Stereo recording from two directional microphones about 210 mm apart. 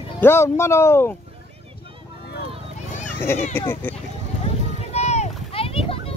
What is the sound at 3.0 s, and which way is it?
Children playing, 10° left (ahead or behind).